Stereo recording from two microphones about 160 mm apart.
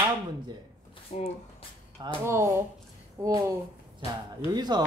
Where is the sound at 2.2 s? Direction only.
20° right (ahead or behind).